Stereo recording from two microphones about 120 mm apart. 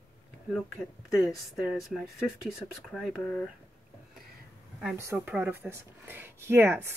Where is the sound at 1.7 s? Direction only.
Centre (ahead or behind).